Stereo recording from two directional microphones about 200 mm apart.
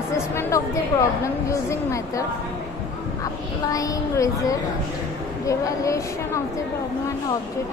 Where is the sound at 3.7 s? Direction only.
15° left (ahead or behind).